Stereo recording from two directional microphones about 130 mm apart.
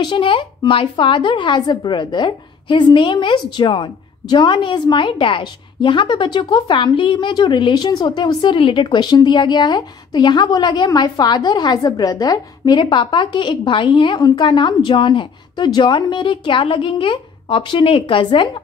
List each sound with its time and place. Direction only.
0.0 s a woman's voice: 40° left (ahead or behind)